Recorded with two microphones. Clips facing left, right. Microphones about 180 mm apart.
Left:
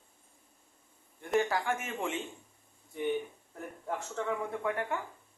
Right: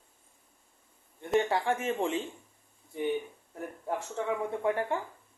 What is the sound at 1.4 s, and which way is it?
Speech, 25° right (ahead or behind).